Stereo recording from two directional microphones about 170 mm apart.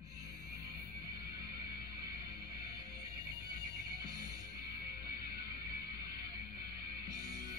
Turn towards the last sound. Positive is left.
turn(degrees=-25)  # may be behind; listen again after turning